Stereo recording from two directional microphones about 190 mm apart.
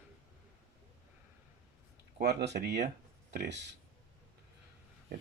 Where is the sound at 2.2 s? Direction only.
60° right (ahead or behind).